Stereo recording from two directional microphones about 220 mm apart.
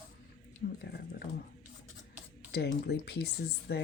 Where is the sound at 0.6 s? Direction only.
35° left (ahead or behind).